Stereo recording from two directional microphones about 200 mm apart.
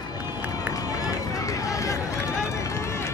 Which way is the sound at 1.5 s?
15° left (ahead or behind).